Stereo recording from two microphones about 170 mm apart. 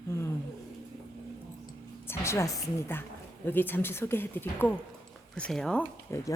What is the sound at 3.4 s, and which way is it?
A woman's voice, 10° left (ahead or behind).